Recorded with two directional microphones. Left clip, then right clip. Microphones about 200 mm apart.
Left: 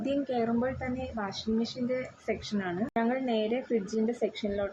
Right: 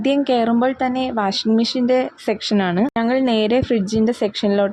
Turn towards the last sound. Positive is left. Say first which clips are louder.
# right 13 dB
turn(degrees=-55)  # may be behind; listen again after turning